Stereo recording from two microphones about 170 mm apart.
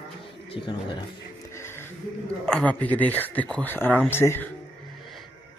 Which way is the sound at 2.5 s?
5° left (ahead or behind).